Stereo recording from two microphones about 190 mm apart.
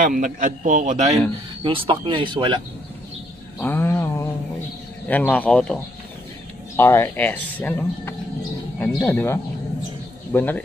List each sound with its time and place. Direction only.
0.0 s a man's voice: 45° right (ahead or behind); by 2.6 s 25° right (ahead or behind)
3.5 s a sound: 10° left (ahead or behind)
5.0 s speech: 10° left (ahead or behind)
6.8 s speech: 10° left (ahead or behind)